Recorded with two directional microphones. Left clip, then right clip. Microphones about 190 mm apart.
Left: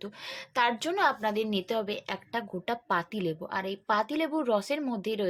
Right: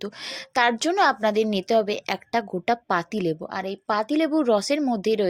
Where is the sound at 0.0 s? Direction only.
40° right (ahead or behind).